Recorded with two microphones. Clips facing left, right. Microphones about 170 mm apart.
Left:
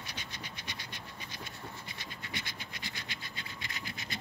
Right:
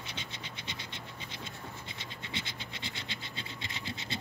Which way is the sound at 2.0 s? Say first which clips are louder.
Right 2 dB; 25° right (ahead or behind).